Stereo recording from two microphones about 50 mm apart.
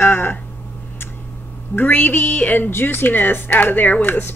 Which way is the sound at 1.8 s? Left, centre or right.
Left.